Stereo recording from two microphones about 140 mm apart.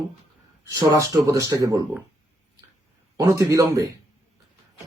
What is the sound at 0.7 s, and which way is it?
Speech, 25° right (ahead or behind).